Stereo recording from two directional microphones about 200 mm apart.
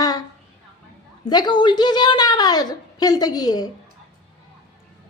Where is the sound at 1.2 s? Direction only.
20° left (ahead or behind).